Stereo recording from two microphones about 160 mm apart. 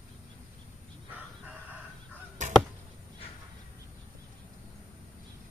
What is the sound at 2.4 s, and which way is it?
Chop, 50° right (ahead or behind).